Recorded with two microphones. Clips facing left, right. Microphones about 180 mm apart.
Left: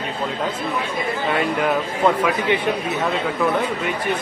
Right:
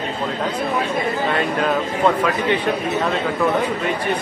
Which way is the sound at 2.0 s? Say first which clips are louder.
Even; 10° left (ahead or behind).